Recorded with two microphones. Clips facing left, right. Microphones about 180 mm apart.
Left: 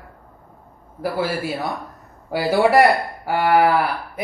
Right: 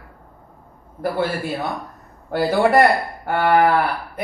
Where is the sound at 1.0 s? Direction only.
5° left (ahead or behind).